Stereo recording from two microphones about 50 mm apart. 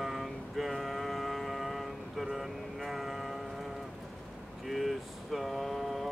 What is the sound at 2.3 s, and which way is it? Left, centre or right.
Vehicle, centre.